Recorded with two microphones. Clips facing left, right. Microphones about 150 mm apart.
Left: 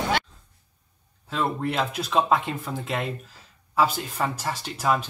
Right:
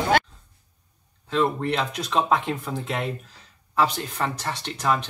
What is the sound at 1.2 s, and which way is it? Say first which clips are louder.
Speech: right 3 dB; 5° left (ahead or behind).